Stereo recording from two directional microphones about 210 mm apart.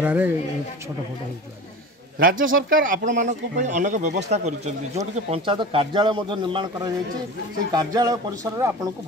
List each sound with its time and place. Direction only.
0.0 s speech: 10° right (ahead or behind)
2.1 s speech: 40° right (ahead or behind)
5.3 s speech: 25° right (ahead or behind)